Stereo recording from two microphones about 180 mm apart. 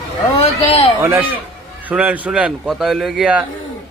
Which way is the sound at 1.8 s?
10° right (ahead or behind).